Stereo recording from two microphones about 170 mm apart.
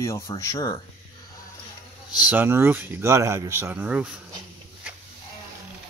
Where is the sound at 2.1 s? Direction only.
10° right (ahead or behind).